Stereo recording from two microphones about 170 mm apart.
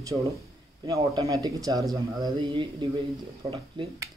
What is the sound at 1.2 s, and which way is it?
Speech, 20° right (ahead or behind).